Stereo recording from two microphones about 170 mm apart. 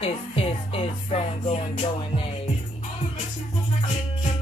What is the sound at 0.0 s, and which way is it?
Music, 35° left (ahead or behind).